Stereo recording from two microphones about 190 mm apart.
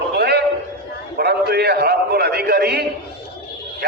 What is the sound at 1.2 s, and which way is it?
A man's voice, 60° right (ahead or behind).